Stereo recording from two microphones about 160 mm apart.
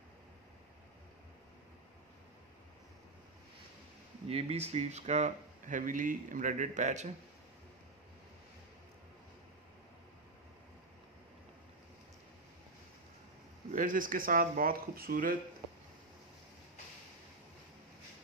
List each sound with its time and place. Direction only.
4.3 s speech: 40° right (ahead or behind)
13.7 s speech: 55° right (ahead or behind)